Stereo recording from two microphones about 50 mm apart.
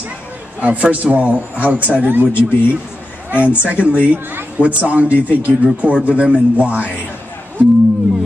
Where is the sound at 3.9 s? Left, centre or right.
Right.